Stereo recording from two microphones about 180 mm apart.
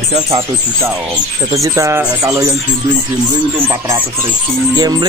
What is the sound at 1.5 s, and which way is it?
Speech, 15° right (ahead or behind).